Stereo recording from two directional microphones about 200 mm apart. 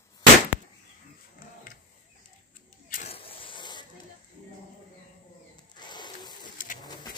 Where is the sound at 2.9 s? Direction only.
35° left (ahead or behind).